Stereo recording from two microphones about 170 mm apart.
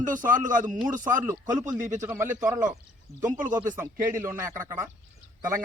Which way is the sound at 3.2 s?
50° right (ahead or behind).